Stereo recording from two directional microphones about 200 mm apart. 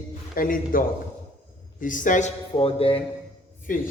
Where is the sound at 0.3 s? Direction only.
45° left (ahead or behind); by 3.0 s 30° left (ahead or behind).